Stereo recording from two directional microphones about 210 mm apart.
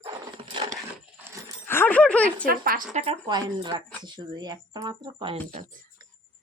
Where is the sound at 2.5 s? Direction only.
45° right (ahead or behind).